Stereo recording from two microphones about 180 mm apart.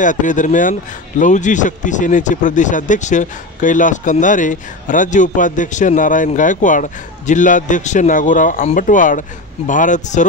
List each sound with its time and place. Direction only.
0.0 s speech: 45° left (ahead or behind)